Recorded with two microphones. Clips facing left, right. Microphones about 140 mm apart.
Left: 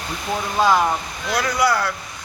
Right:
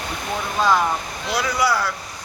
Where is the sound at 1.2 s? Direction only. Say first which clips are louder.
Left 2 dB; 5° right (ahead or behind).